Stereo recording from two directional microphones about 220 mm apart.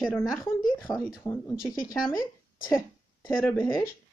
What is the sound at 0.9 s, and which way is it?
Speech, 15° left (ahead or behind).